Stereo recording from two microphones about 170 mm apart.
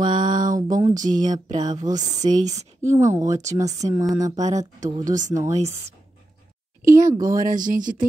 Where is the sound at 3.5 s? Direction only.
20° right (ahead or behind).